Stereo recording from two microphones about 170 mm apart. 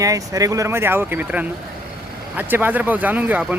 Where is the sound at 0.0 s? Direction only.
20° right (ahead or behind).